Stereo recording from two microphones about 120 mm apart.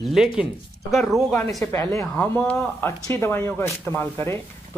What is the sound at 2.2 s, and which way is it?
Speech, 25° left (ahead or behind).